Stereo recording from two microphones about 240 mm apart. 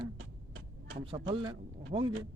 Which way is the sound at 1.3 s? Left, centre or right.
Right.